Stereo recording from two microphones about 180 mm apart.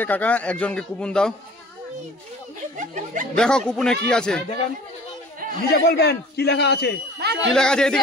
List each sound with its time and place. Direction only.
0.0 s a man's voice: 10° left (ahead or behind)
2.8 s speech: 45° right (ahead or behind)
3.3 s speech: 5° left (ahead or behind)
5.7 s a man's voice: 65° left (ahead or behind)
7.2 s speech: 65° right (ahead or behind)
7.5 s speech: 5° left (ahead or behind)